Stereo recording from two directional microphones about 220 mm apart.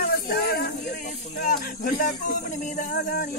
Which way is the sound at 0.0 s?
45° left (ahead or behind).